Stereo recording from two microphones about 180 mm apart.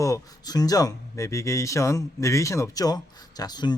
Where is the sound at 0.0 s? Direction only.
20° left (ahead or behind).